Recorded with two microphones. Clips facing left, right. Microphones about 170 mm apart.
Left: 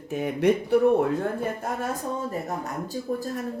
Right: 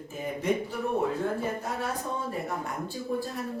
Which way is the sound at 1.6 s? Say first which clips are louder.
Left 3 dB; 50° left (ahead or behind).